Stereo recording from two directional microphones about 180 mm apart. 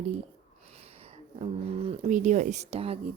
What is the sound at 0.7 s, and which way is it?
Speech, 35° right (ahead or behind).